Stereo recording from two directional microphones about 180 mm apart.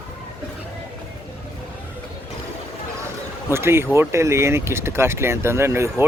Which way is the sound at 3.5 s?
15° right (ahead or behind).